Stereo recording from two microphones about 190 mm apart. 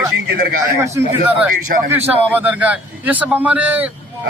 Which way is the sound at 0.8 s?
15° right (ahead or behind).